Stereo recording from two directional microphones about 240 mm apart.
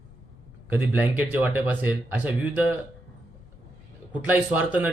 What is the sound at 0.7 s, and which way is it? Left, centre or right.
Speech, centre.